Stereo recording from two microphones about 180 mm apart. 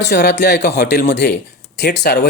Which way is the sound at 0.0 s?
65° left (ahead or behind).